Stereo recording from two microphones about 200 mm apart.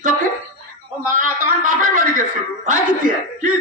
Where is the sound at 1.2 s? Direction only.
40° right (ahead or behind).